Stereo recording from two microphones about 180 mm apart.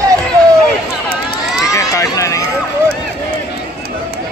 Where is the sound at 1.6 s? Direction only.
20° left (ahead or behind).